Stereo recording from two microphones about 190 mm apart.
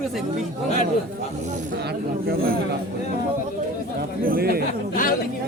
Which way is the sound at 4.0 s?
50° right (ahead or behind).